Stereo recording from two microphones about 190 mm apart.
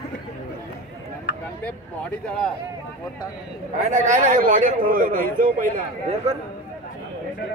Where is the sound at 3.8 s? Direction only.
40° right (ahead or behind).